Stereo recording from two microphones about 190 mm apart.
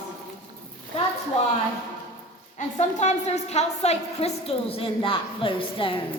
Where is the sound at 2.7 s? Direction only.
35° left (ahead or behind).